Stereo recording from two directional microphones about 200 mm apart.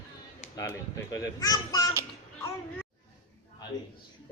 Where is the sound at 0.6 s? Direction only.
15° left (ahead or behind).